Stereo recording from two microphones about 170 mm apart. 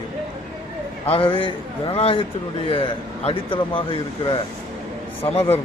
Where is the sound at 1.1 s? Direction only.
35° left (ahead or behind).